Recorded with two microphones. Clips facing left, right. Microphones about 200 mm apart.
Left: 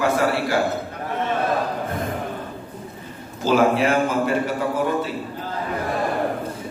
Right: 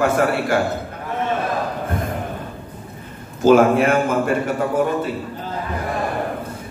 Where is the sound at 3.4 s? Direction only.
50° right (ahead or behind).